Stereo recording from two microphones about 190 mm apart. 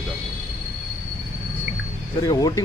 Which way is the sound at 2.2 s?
20° left (ahead or behind).